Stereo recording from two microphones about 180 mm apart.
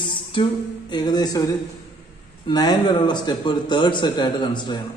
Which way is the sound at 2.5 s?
20° left (ahead or behind).